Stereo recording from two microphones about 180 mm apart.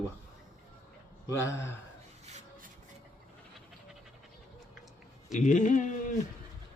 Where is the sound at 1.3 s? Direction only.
15° left (ahead or behind).